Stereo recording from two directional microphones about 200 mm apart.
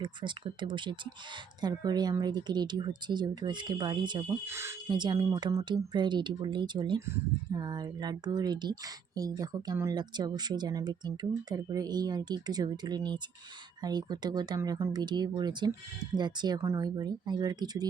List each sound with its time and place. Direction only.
0.0 s speech: 25° right (ahead or behind)